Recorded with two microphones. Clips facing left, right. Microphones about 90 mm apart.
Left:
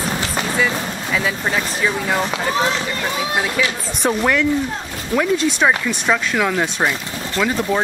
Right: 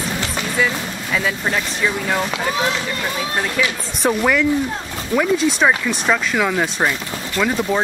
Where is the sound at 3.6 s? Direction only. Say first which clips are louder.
Even; centre (ahead or behind).